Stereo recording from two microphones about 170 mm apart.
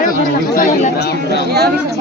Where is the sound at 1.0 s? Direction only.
70° left (ahead or behind).